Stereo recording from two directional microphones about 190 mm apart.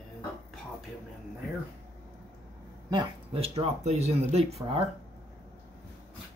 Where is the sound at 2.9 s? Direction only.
25° right (ahead or behind).